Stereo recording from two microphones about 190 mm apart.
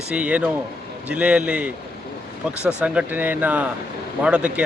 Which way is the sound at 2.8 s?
5° right (ahead or behind).